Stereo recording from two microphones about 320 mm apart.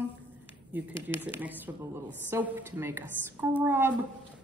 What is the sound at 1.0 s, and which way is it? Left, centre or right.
A woman's voice, centre.